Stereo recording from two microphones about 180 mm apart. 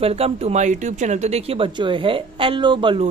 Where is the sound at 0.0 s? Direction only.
35° right (ahead or behind).